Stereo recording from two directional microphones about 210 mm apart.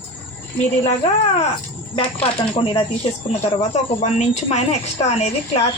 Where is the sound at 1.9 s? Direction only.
25° left (ahead or behind).